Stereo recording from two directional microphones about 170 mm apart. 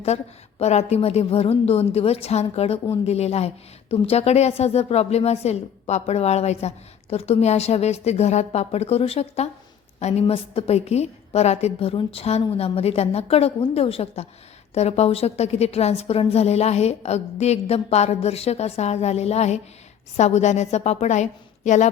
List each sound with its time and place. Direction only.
0.6 s a woman's voice: 40° left (ahead or behind)